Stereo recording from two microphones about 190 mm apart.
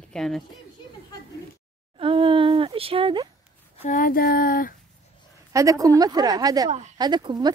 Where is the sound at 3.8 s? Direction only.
45° left (ahead or behind).